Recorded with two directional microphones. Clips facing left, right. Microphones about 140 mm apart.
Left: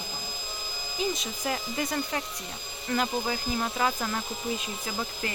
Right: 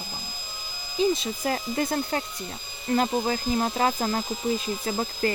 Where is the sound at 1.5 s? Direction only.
35° right (ahead or behind).